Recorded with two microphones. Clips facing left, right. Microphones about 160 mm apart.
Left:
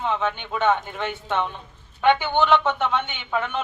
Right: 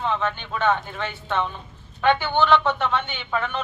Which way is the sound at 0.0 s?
15° left (ahead or behind).